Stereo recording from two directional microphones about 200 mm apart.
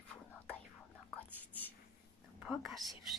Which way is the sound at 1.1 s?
10° left (ahead or behind).